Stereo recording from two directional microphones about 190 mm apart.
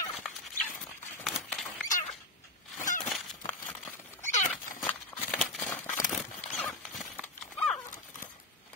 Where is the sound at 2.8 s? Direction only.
40° left (ahead or behind).